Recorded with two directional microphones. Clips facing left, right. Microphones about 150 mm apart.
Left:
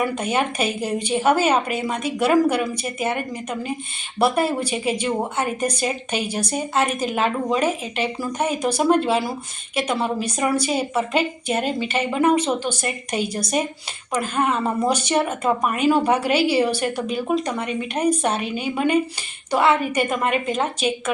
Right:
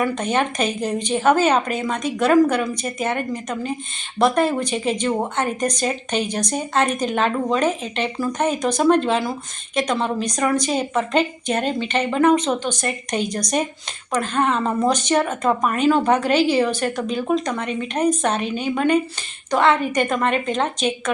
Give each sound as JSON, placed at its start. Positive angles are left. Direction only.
{"t": 0.0, "sound": "speech", "side_deg": 10}